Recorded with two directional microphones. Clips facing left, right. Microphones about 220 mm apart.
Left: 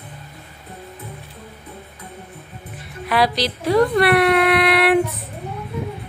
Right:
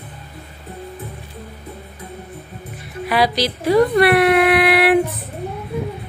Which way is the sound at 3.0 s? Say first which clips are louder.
Right 1 dB; centre (ahead or behind).